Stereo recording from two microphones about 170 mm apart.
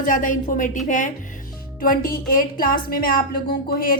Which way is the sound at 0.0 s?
50° left (ahead or behind).